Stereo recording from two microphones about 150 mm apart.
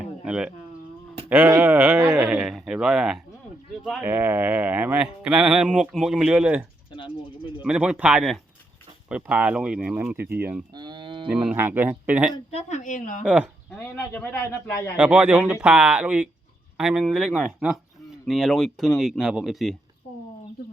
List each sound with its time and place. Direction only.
0.0 s a sound: 5° right (ahead or behind)
1.3 s speech: 10° right (ahead or behind)
6.9 s speech: 35° left (ahead or behind)
7.6 s speech: 5° right (ahead or behind)
10.8 s livestock: 30° right (ahead or behind)
11.3 s speech: 5° right (ahead or behind)
12.5 s a woman's voice: 45° left (ahead or behind)
13.2 s speech: 10° right (ahead or behind)
13.7 s speech: 10° left (ahead or behind)
14.9 s speech: 10° right (ahead or behind)